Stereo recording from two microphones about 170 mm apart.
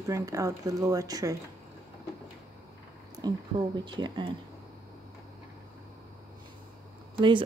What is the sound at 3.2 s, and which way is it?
Speech, 25° right (ahead or behind).